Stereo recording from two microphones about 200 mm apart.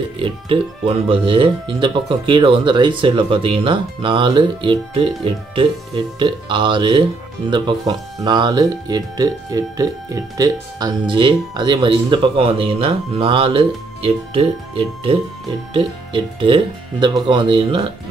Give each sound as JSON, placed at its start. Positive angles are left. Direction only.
{"t": 0.2, "sound": "speech", "side_deg": -25}